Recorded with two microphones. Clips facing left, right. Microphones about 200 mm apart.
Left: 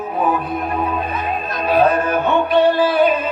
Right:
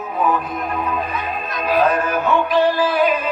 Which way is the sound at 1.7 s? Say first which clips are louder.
Left 2 dB; 30° left (ahead or behind).